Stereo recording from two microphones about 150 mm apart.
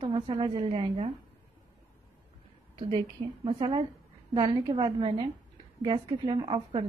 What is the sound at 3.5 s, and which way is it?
A woman's voice, 35° right (ahead or behind).